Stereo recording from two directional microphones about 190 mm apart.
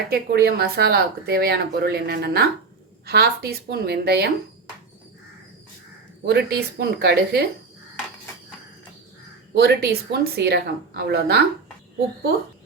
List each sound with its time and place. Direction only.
0.1 s speech: 55° right (ahead or behind)
6.2 s speech: 60° right (ahead or behind)
9.6 s speech: 55° right (ahead or behind)